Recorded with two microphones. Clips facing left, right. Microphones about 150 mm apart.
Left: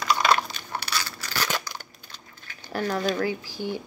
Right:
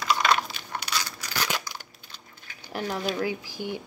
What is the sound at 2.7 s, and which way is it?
Speech, 15° right (ahead or behind).